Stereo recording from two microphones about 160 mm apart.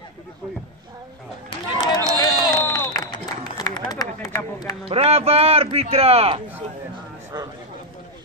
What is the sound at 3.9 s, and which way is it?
Speech, 25° left (ahead or behind).